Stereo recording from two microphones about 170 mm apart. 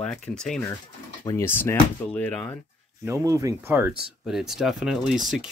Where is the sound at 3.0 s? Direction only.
20° right (ahead or behind).